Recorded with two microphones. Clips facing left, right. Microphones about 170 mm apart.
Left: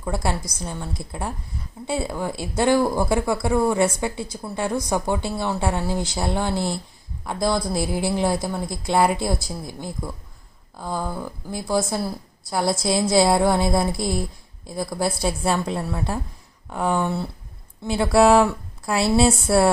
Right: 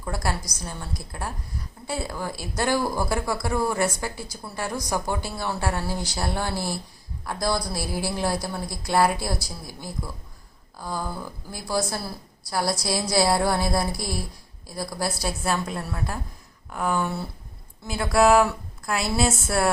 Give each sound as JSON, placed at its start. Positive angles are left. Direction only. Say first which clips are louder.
{"t": 0.0, "sound": "speech", "louder": "left 4 dB", "side_deg": 25}